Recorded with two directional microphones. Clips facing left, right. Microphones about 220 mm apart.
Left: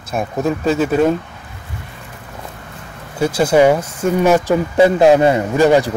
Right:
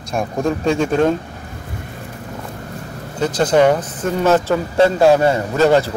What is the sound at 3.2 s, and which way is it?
Speech, 10° left (ahead or behind).